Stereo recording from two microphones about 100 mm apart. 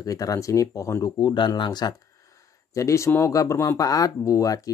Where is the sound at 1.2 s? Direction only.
50° left (ahead or behind).